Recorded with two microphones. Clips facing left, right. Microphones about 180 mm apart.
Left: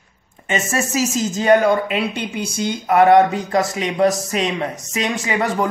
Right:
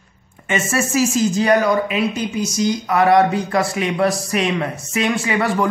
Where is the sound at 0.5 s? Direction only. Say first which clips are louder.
Right 1 dB; 40° left (ahead or behind).